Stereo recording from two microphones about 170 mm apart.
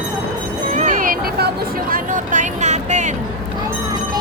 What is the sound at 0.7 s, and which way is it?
Vehicle, 45° right (ahead or behind).